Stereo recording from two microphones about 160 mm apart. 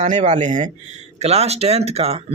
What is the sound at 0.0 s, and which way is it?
Speech, 50° right (ahead or behind).